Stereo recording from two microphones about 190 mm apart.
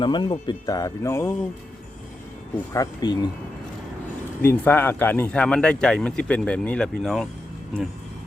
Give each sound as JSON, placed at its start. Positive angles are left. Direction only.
{"t": 0.0, "sound": "speech", "side_deg": 25}
{"t": 2.7, "sound": "speech", "side_deg": 20}
{"t": 4.4, "sound": "speech", "side_deg": 10}